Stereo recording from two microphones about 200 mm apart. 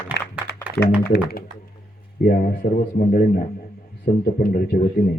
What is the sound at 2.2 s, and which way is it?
Speech, 45° left (ahead or behind).